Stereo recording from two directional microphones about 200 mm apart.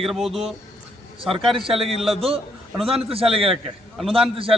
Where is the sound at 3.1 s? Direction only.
30° right (ahead or behind).